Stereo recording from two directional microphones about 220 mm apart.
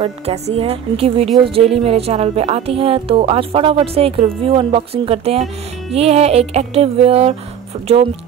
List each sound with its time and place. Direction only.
0.0 s music: 25° right (ahead or behind)